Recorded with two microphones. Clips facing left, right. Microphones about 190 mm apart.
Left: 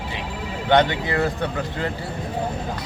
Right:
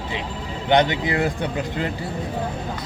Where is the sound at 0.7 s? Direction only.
15° right (ahead or behind).